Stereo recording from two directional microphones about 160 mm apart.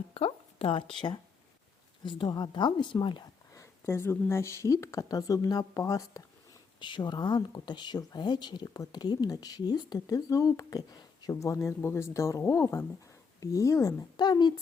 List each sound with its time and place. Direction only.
0.1 s a sound: 35° left (ahead or behind)
2.0 s speech: 30° left (ahead or behind)
3.5 s speech: 20° left (ahead or behind)